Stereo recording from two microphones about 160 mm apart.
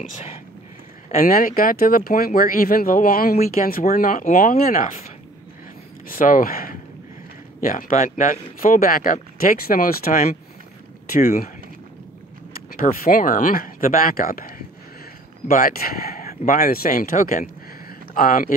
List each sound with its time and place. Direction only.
1.1 s speech: 60° left (ahead or behind)
6.0 s speech: 60° left (ahead or behind)
7.6 s speech: 50° left (ahead or behind)
12.7 s speech: 65° left (ahead or behind)
15.6 s speech: 65° left (ahead or behind)
17.8 s a sound: 60° left (ahead or behind)